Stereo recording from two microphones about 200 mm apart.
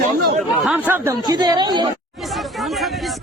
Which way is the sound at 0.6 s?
10° right (ahead or behind).